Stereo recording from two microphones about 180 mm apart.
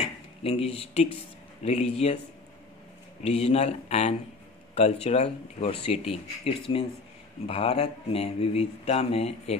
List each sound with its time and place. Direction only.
0.4 s speech: 35° left (ahead or behind)
3.3 s speech: 35° left (ahead or behind)